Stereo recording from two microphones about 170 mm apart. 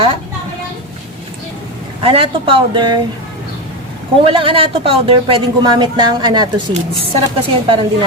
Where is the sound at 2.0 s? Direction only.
30° right (ahead or behind).